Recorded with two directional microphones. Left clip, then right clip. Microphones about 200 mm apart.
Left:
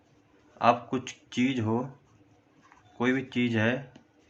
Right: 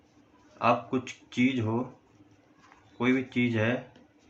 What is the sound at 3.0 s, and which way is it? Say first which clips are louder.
Speech: even; 55° left (ahead or behind).